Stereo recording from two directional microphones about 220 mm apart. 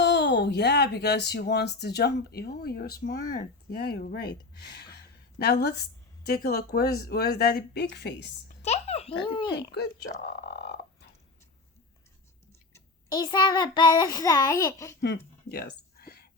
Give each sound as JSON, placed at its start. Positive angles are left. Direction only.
{"t": 0.0, "sound": "speech", "side_deg": 50}
{"t": 8.6, "sound": "a child's voice", "side_deg": 30}
{"t": 9.7, "sound": "speech", "side_deg": 50}
{"t": 10.4, "sound": "frog", "side_deg": 45}
{"t": 12.7, "sound": "child singing", "side_deg": 20}
{"t": 15.0, "sound": "a sound", "side_deg": 50}